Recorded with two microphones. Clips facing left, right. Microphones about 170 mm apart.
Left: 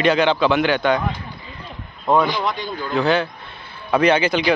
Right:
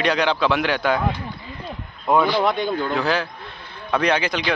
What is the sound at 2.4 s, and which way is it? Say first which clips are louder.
Speech: right 4 dB; 55° right (ahead or behind).